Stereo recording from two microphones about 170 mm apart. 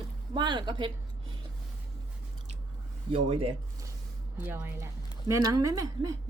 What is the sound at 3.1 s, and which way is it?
Speech, 35° right (ahead or behind).